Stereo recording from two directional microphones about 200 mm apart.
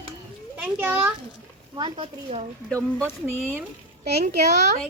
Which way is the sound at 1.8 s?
25° right (ahead or behind).